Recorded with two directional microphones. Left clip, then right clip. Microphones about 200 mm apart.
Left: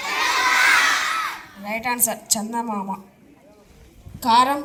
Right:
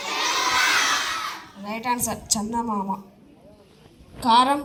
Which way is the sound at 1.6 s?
15° left (ahead or behind).